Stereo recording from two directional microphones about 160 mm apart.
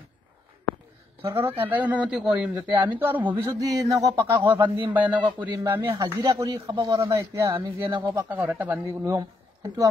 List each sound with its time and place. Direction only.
1.2 s a man's voice: 15° right (ahead or behind)
3.5 s a man's voice: 20° right (ahead or behind)
8.0 s a man's voice: 15° right (ahead or behind)